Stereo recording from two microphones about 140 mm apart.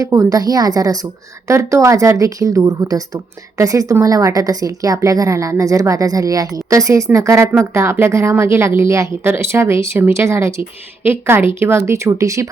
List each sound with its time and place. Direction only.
0.0 s a woman's voice: 20° right (ahead or behind)